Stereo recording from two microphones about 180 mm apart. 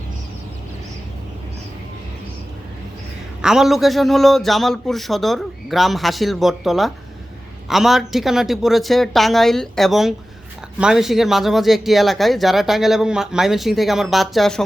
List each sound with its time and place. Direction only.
3.4 s speech: 5° right (ahead or behind)